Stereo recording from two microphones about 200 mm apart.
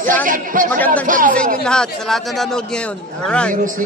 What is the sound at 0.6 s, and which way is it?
Speech, 10° left (ahead or behind).